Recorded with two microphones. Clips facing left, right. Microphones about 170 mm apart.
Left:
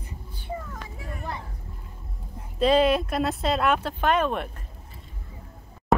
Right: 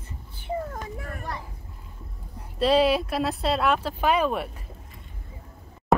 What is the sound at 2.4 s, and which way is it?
Speech, centre (ahead or behind).